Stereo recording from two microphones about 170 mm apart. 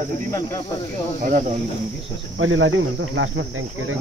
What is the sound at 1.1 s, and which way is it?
Speech, 50° right (ahead or behind).